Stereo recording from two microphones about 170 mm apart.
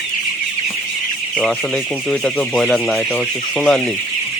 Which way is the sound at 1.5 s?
5° left (ahead or behind).